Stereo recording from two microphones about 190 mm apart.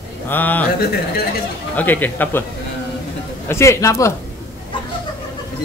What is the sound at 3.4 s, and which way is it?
Speech, 15° left (ahead or behind).